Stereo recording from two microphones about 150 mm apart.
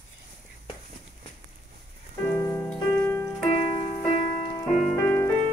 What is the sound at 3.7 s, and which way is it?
Music, 35° left (ahead or behind).